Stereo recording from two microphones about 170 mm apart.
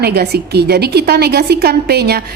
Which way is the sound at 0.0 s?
70° right (ahead or behind).